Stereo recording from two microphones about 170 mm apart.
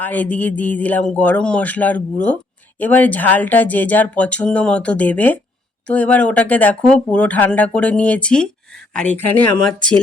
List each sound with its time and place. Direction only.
0.0 s speech: 10° left (ahead or behind)